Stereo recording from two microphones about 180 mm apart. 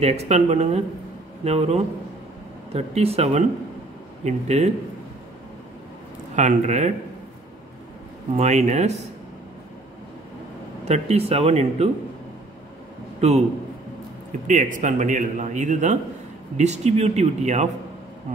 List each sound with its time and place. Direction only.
0.0 s speech: 35° right (ahead or behind)
6.3 s speech: 40° right (ahead or behind)
8.4 s speech: 40° right (ahead or behind)
10.9 s speech: 35° right (ahead or behind)
14.5 s a man's voice: 45° right (ahead or behind)